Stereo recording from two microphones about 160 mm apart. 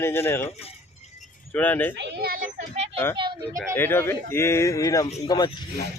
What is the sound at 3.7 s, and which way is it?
A man's voice, 15° left (ahead or behind).